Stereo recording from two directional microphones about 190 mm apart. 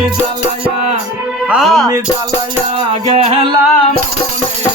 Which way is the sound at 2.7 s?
30° right (ahead or behind).